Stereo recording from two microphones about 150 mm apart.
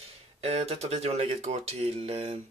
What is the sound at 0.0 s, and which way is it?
Speech, 45° right (ahead or behind).